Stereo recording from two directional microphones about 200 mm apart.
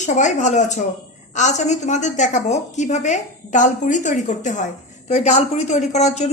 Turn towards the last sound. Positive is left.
turn(degrees=35)  # may be behind; listen again after turning